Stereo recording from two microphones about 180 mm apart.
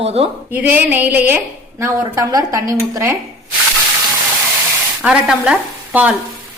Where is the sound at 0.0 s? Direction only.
35° right (ahead or behind).